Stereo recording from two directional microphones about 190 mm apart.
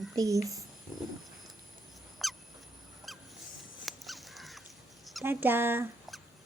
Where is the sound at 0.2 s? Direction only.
15° right (ahead or behind).